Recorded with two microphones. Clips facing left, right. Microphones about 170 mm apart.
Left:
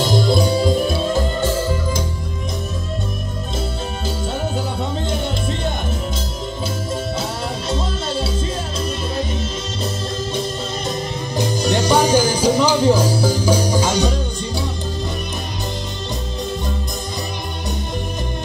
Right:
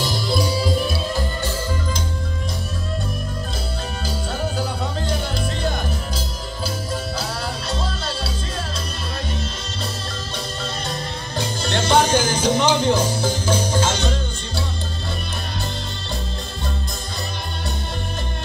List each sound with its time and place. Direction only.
0.0 s music: 50° left (ahead or behind)
7.7 s music: 25° left (ahead or behind)
11.7 s music: 10° left (ahead or behind)